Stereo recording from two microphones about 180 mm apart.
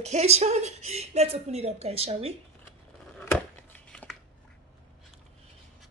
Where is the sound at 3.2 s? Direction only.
10° left (ahead or behind).